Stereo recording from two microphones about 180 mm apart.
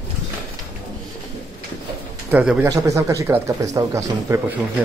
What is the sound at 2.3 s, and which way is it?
A man's voice, 10° right (ahead or behind).